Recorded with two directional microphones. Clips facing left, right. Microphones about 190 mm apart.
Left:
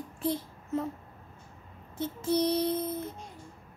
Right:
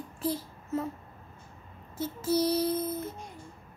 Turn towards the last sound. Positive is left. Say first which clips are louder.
# even
turn(degrees=-5)  # may be behind; listen again after turning